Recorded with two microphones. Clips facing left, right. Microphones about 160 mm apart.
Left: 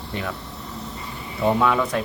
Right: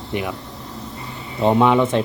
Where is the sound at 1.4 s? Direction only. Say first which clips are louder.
Right 5 dB; 20° right (ahead or behind).